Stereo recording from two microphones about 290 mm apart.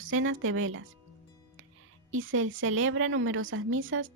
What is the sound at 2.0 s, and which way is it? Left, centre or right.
Speech, right.